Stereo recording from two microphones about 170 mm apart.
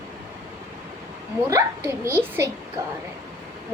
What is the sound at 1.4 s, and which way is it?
Speech, 15° right (ahead or behind).